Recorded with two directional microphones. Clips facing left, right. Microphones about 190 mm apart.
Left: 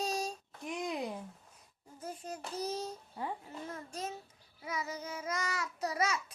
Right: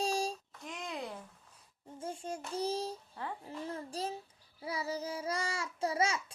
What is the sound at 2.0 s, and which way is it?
Child singing, 25° right (ahead or behind).